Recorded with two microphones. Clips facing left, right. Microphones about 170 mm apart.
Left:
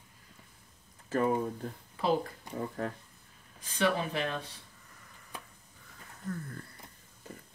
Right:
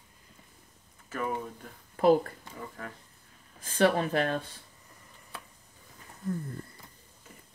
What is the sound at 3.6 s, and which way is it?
Speech, 50° right (ahead or behind).